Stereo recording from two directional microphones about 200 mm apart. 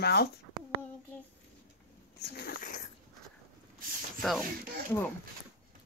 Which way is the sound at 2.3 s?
45° left (ahead or behind).